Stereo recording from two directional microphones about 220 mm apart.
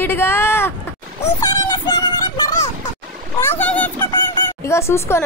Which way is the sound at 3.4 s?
10° left (ahead or behind).